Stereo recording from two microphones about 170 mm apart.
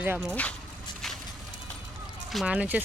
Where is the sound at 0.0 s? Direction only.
15° right (ahead or behind).